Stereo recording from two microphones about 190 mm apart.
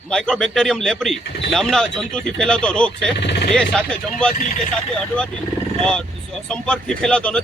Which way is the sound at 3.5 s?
5° left (ahead or behind).